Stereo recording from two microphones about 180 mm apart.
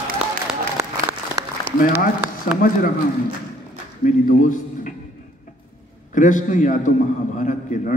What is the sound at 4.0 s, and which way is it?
Speech, 45° left (ahead or behind).